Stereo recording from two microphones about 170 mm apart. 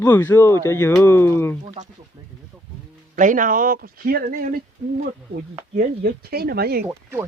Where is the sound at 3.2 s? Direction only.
50° right (ahead or behind).